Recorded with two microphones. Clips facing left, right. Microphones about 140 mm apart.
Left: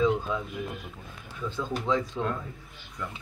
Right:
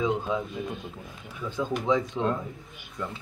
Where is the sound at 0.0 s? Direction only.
20° right (ahead or behind).